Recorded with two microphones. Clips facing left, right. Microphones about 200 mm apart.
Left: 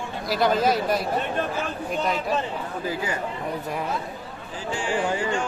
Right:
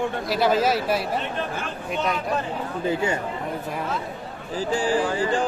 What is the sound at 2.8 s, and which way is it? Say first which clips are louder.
Speech: right 6 dB; 25° right (ahead or behind).